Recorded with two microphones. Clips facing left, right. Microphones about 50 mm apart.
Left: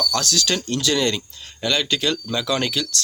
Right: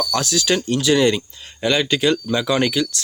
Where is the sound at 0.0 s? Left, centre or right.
Centre.